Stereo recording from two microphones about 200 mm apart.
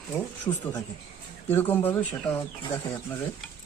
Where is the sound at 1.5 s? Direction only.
10° left (ahead or behind).